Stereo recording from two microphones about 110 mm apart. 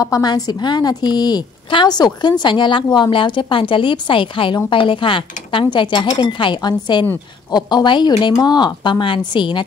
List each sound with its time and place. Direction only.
0.0 s a woman's voice: 35° left (ahead or behind)